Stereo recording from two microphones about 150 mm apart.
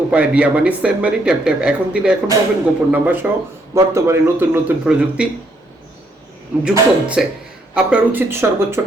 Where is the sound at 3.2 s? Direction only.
10° right (ahead or behind).